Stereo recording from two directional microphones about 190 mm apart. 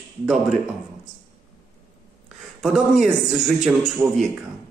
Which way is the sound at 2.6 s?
5° right (ahead or behind).